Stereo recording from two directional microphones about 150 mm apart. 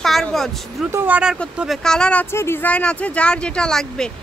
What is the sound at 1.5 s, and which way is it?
Speech, centre (ahead or behind).